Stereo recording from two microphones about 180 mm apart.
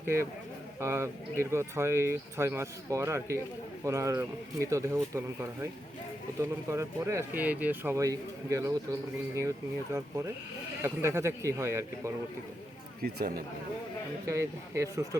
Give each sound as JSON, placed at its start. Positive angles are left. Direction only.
{"t": 0.8, "sound": "speech", "side_deg": -15}
{"t": 10.8, "sound": "speech", "side_deg": -15}
{"t": 13.0, "sound": "speech", "side_deg": -55}
{"t": 14.3, "sound": "speech", "side_deg": -15}